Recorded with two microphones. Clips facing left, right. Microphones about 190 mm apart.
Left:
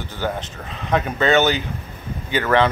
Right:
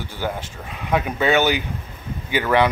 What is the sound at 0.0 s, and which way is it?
Speech, 10° right (ahead or behind).